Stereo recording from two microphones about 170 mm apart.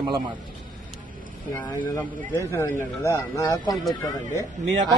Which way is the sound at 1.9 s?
15° left (ahead or behind).